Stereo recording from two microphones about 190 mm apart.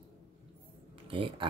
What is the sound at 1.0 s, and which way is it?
Speech, 25° right (ahead or behind).